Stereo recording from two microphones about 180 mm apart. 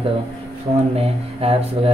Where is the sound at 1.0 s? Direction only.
35° right (ahead or behind).